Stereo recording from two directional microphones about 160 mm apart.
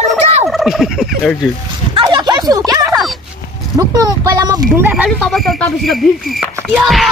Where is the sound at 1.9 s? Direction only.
30° right (ahead or behind).